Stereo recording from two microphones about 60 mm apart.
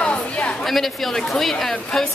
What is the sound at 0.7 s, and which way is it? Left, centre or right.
Speech, centre.